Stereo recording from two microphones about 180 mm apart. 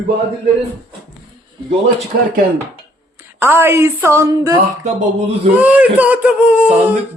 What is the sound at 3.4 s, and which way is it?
Speech, 15° right (ahead or behind).